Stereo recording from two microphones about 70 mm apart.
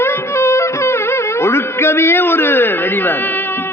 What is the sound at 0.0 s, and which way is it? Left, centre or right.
Music, left.